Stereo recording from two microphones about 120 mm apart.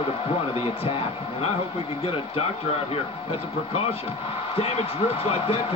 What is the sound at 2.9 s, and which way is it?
Speech, 55° left (ahead or behind).